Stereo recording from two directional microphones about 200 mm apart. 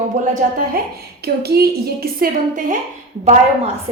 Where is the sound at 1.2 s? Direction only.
50° right (ahead or behind).